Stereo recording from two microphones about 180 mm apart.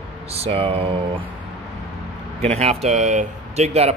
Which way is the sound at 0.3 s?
35° right (ahead or behind).